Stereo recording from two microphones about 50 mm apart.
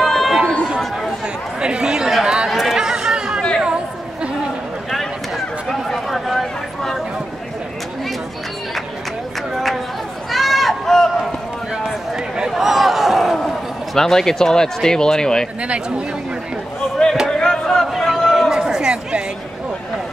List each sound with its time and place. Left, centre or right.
0.0 s chatter: centre
1.6 s chatter: centre
5.7 s chatter: centre
10.3 s run: centre
12.4 s a sound: centre
13.9 s speech: centre
17.4 s a sound: centre
17.9 s a sound: centre
18.5 s chatter: centre